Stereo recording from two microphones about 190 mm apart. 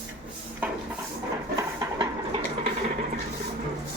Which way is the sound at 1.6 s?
25° right (ahead or behind).